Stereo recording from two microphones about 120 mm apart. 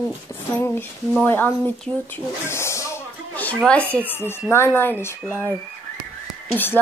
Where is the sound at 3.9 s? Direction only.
15° left (ahead or behind).